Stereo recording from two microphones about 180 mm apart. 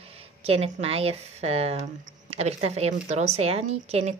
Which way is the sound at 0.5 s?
35° right (ahead or behind).